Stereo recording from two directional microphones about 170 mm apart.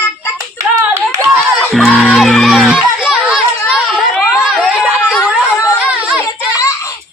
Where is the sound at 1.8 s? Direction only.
5° right (ahead or behind).